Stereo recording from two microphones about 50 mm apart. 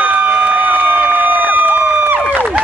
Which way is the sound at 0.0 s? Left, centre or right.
Right.